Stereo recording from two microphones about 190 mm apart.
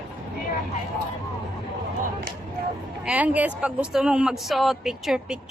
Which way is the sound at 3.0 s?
5° right (ahead or behind).